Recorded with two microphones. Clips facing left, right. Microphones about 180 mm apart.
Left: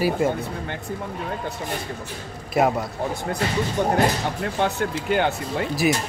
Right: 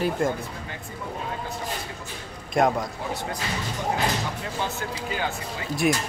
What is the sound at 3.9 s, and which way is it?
Speech, 65° left (ahead or behind).